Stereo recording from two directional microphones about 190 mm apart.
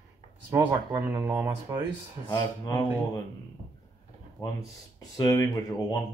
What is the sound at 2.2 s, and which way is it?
Speech, 20° left (ahead or behind).